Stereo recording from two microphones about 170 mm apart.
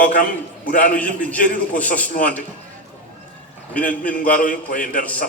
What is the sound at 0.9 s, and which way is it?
A man's voice, 10° left (ahead or behind).